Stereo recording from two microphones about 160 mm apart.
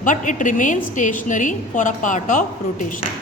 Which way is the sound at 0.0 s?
55° left (ahead or behind).